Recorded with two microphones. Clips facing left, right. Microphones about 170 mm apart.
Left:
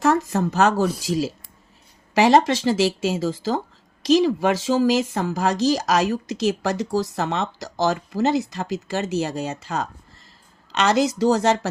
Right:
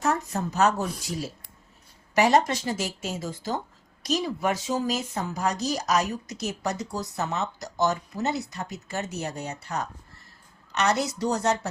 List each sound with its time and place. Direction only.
0.0 s speech: 90° left